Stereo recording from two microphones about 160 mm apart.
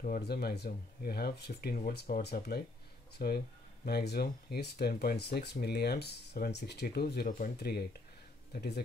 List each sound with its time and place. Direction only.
0.2 s speech: 80° left
1.9 s speech: 70° left (ahead or behind); by 8.8 s 90° left